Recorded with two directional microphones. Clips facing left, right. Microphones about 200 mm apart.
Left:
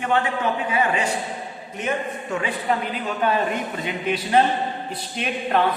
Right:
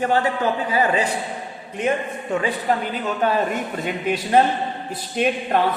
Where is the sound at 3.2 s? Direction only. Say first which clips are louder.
Right 1 dB; 45° right (ahead or behind).